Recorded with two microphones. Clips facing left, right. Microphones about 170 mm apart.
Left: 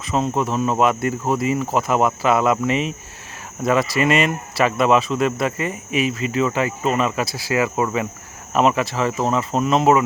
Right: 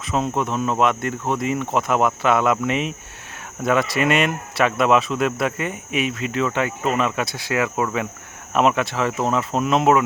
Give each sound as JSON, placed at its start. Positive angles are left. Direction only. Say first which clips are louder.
{"t": 0.0, "sound": "speech", "louder": "left 2 dB", "side_deg": 0}